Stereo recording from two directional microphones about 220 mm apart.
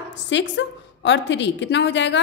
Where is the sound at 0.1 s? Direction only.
55° left (ahead or behind).